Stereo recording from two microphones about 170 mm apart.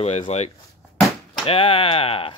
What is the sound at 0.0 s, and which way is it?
Speech, 40° left (ahead or behind).